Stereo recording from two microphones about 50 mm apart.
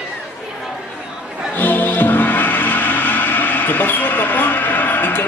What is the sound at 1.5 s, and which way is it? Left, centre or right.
Music, left.